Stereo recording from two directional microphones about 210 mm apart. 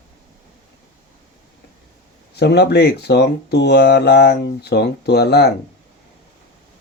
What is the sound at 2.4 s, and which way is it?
Speech, 55° left (ahead or behind).